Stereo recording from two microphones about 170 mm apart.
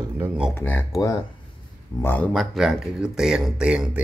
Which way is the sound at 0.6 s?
10° left (ahead or behind).